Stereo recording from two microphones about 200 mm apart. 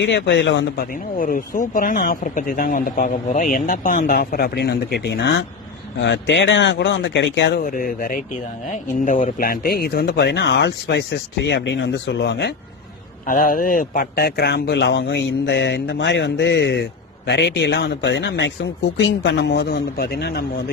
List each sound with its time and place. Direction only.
0.0 s speech: 65° left (ahead or behind)
1.2 s speech: 45° left (ahead or behind); by 7.6 s 65° left (ahead or behind)
7.6 s speech: 45° left (ahead or behind)
13.2 s speech: 45° left (ahead or behind)